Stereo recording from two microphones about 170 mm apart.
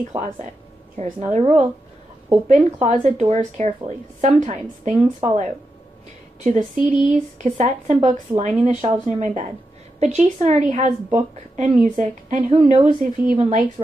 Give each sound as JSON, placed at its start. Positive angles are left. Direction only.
{"t": 0.9, "sound": "speech", "side_deg": -40}
{"t": 2.4, "sound": "speech", "side_deg": -45}
{"t": 6.4, "sound": "speech", "side_deg": -45}